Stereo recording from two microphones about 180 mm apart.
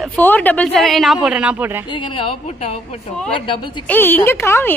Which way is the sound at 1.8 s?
25° left (ahead or behind).